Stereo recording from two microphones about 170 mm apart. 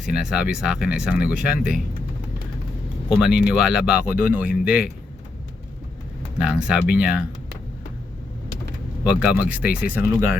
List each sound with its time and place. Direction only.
0.0 s speech: 5° right (ahead or behind)
1.5 s speech: 65° left (ahead or behind)
3.2 s speech: 5° right (ahead or behind)
6.4 s speech: 5° right (ahead or behind)
9.0 s speech: 5° right (ahead or behind)